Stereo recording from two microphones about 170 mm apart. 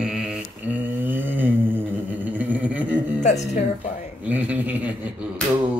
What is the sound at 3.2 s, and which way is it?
Speech, 45° left (ahead or behind).